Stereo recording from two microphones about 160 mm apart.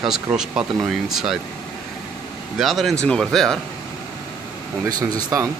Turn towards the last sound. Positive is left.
turn(degrees=-15)  # may be behind; listen again after turning